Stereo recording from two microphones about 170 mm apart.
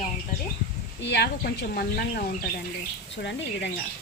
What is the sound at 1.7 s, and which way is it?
Speech, 65° left (ahead or behind).